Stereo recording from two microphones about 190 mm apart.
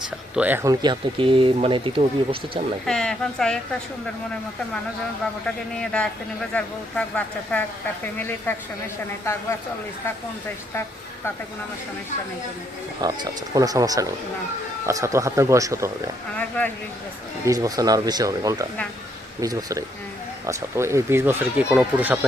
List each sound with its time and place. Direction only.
0.3 s speech: 10° right (ahead or behind); by 2.4 s 30° right (ahead or behind)
2.8 s a woman's voice: 5° left (ahead or behind)
5.7 s a woman's voice: 5° left (ahead or behind)
13.0 s speech: 20° right (ahead or behind)
16.4 s speech: 10° left (ahead or behind)
17.4 s speech: 15° right (ahead or behind)